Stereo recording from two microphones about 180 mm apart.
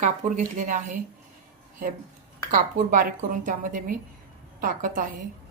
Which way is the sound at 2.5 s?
50° right (ahead or behind).